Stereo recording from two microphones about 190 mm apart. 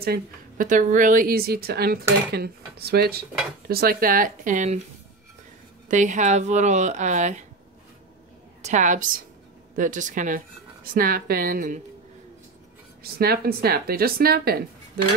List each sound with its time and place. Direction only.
0.0 s a woman's voice: 50° right (ahead or behind)
5.9 s speech: 40° right (ahead or behind)
8.6 s a woman's voice: 40° right (ahead or behind)
13.0 s a woman's voice: 55° right (ahead or behind)